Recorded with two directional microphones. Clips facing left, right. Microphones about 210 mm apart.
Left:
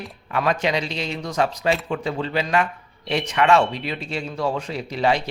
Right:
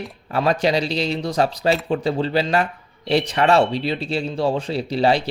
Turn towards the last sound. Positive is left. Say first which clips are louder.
# right 3 dB
turn(degrees=-30)  # may be behind; listen again after turning